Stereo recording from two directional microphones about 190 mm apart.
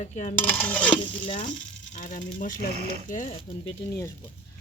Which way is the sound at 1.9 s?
45° left (ahead or behind).